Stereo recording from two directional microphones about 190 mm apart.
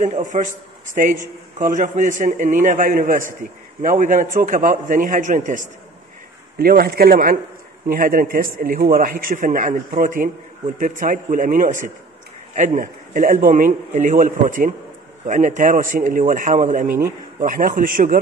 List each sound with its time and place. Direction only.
0.0 s a man's voice: 40° right (ahead or behind)